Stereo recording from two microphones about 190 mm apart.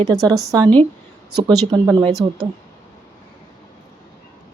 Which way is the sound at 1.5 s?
25° right (ahead or behind).